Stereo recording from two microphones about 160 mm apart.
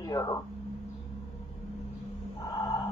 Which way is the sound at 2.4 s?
25° left (ahead or behind).